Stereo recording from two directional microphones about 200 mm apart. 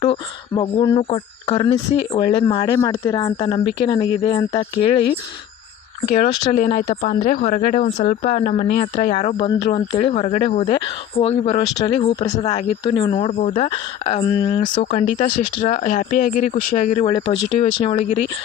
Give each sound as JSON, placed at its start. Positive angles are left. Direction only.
{"t": 0.0, "sound": "speech", "side_deg": 25}
{"t": 6.1, "sound": "speech", "side_deg": 35}
{"t": 14.8, "sound": "speech", "side_deg": 35}